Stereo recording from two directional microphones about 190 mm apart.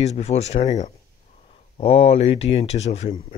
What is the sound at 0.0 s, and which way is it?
Speech, 35° left (ahead or behind).